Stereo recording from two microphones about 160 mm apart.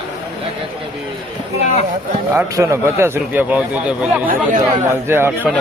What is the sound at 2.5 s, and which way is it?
A man's voice, 15° right (ahead or behind).